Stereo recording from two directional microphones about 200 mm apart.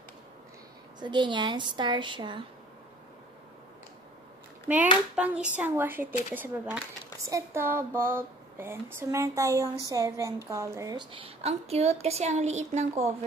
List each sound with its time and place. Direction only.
0.9 s a woman's voice: 20° right (ahead or behind)
5.1 s hands: 5° right (ahead or behind)
5.6 s speech: 10° right (ahead or behind); by 13.1 s 35° right (ahead or behind)